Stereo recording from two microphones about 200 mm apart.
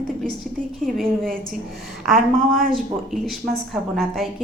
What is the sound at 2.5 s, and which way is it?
Speech, 45° right (ahead or behind).